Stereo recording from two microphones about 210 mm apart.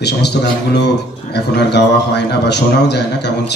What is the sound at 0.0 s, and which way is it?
A man's voice, 55° left (ahead or behind).